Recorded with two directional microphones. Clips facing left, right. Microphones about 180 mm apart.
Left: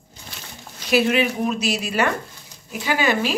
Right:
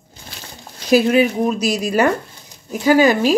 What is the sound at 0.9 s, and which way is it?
Speech, 40° right (ahead or behind).